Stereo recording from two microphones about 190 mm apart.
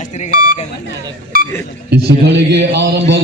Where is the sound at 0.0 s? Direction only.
35° left (ahead or behind).